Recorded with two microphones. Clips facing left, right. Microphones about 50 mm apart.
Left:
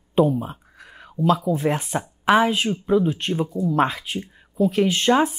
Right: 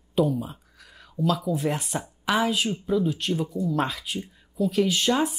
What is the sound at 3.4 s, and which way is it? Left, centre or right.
Speech, centre.